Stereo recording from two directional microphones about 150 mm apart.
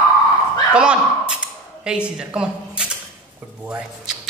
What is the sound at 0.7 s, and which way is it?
Speech, 5° right (ahead or behind).